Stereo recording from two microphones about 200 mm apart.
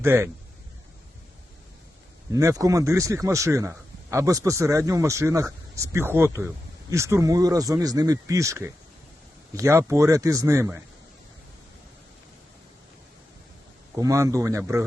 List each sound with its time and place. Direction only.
0.0 s speech: 10° right (ahead or behind)
2.3 s speech: 15° right (ahead or behind)
13.9 s speech: 15° right (ahead or behind)